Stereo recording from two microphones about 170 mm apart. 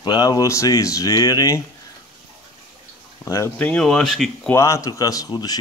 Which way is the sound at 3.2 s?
15° left (ahead or behind).